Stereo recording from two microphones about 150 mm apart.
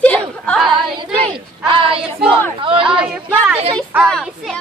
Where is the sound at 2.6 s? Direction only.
35° right (ahead or behind).